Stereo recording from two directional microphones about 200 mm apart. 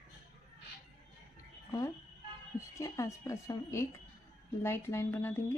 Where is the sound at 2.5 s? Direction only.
15° left (ahead or behind).